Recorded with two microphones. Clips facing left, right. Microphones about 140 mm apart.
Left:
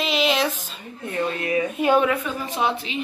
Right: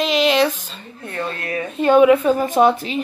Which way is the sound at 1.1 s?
15° left (ahead or behind).